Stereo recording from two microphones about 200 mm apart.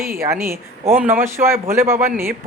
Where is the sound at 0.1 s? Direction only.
15° right (ahead or behind).